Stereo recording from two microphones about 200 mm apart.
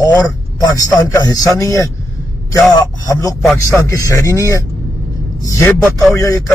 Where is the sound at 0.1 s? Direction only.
20° left (ahead or behind).